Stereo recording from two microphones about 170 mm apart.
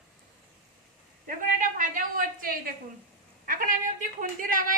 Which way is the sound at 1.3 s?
50° right (ahead or behind).